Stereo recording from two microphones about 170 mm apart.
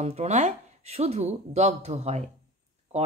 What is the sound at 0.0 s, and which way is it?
Speech, 40° right (ahead or behind).